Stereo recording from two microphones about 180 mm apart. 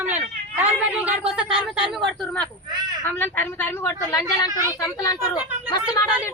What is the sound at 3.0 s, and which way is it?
Speech, 10° left (ahead or behind).